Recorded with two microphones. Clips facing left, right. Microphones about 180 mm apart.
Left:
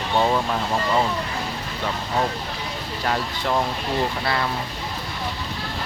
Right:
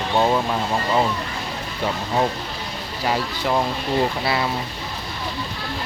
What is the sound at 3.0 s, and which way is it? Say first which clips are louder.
Speech: right 2 dB; 5° right (ahead or behind).